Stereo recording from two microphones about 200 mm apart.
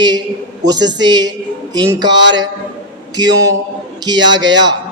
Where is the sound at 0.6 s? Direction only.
20° right (ahead or behind).